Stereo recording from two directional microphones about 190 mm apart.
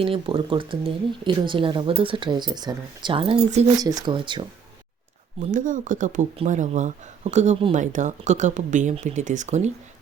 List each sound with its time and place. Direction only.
0.0 s speech: 30° right (ahead or behind)
3.8 s speech: 20° right (ahead or behind)
5.4 s speech: 45° right (ahead or behind)